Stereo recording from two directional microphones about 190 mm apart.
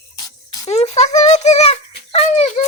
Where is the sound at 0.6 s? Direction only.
35° left (ahead or behind).